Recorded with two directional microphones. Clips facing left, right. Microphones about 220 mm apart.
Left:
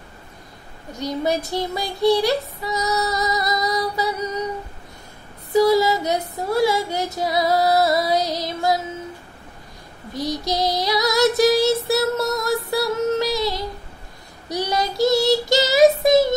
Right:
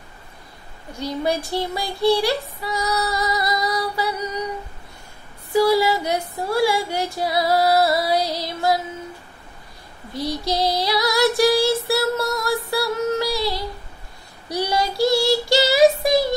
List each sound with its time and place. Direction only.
0.9 s child singing: 20° left (ahead or behind)
5.5 s female singing: 20° left (ahead or behind)
10.1 s child singing: 15° left (ahead or behind)